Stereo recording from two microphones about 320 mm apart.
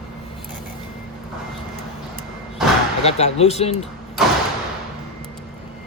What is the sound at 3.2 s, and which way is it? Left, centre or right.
Speech, centre.